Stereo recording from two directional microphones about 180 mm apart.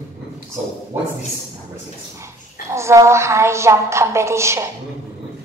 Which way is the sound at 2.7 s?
15° right (ahead or behind).